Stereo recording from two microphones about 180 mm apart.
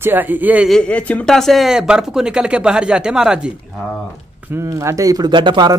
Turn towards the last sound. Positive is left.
turn(degrees=-25)  # may be behind; listen again after turning